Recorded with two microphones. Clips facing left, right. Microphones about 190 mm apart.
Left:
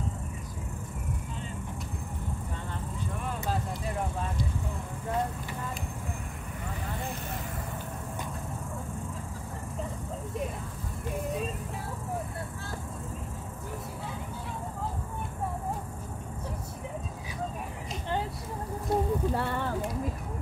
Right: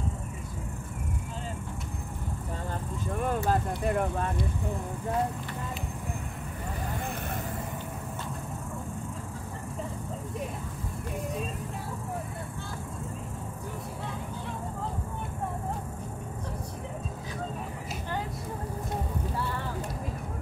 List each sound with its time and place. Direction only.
3.2 s speech: 50° right (ahead or behind)